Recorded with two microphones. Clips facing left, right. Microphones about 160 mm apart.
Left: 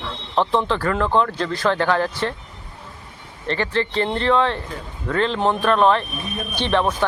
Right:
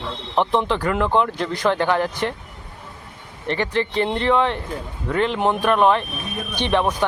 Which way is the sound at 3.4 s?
15° right (ahead or behind).